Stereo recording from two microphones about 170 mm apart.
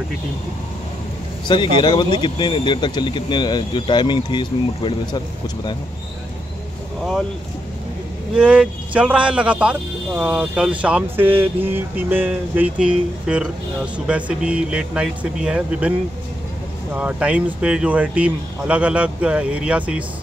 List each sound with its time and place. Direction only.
1.5 s speech: 25° left (ahead or behind)
8.4 s speech: 5° right (ahead or behind)
16.9 s speech: 5° right (ahead or behind)